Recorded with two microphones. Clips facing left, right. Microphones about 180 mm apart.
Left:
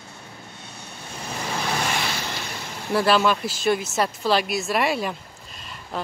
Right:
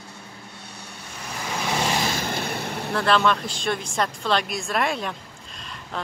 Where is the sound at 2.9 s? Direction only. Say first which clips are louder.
Left 2 dB; 5° left (ahead or behind).